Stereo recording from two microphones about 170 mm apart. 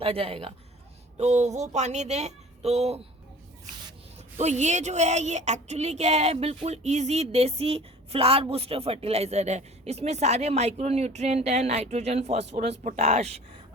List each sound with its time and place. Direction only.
0.0 s speech: 35° right (ahead or behind)
4.4 s speech: 45° right (ahead or behind)